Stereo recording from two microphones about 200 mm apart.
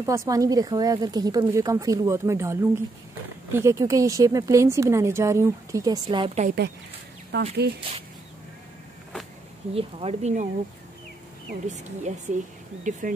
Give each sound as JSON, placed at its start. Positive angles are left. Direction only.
{"t": 0.0, "sound": "speech", "side_deg": -15}
{"t": 6.0, "sound": "speech", "side_deg": -30}
{"t": 7.3, "sound": "speech", "side_deg": -60}
{"t": 9.8, "sound": "speech", "side_deg": -30}
{"t": 11.6, "sound": "speech", "side_deg": -35}